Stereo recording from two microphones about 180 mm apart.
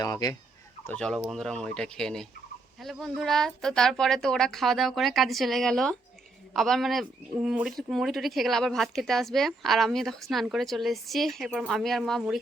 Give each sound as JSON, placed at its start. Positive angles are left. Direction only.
{"t": 0.0, "sound": "speech", "side_deg": 20}
{"t": 0.9, "sound": "a man's voice", "side_deg": 5}